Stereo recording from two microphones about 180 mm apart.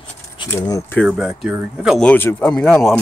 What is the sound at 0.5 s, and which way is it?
Speech, 15° left (ahead or behind).